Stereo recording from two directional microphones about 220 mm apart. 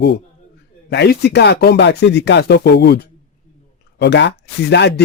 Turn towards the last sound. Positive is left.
turn(degrees=50)  # may be behind; listen again after turning